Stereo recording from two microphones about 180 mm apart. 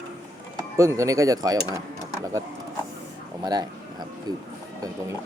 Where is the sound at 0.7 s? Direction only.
15° right (ahead or behind).